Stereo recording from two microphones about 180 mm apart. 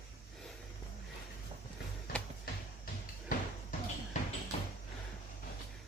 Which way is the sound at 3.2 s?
45° left (ahead or behind).